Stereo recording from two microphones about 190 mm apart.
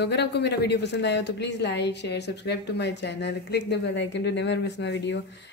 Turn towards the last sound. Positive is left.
turn(degrees=65)  # may be behind; listen again after turning